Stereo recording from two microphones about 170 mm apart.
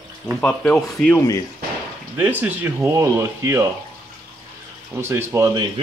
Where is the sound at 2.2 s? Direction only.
10° right (ahead or behind).